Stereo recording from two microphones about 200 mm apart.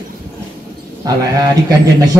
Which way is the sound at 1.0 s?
20° right (ahead or behind).